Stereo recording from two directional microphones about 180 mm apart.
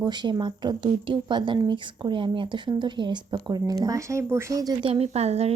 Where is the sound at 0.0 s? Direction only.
25° right (ahead or behind).